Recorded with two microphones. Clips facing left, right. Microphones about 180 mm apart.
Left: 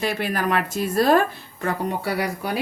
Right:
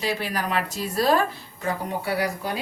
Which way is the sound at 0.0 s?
50° left (ahead or behind).